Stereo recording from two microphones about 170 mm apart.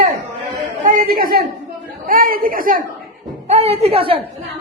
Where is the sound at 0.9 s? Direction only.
60° right (ahead or behind).